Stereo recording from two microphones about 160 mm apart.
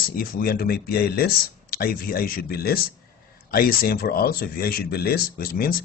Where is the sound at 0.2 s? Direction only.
65° left (ahead or behind).